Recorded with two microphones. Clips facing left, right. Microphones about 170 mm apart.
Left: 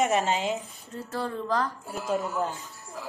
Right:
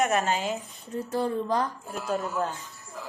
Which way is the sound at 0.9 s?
15° right (ahead or behind).